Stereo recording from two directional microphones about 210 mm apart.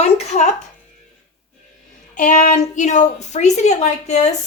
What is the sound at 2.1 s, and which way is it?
A woman's voice, 40° left (ahead or behind).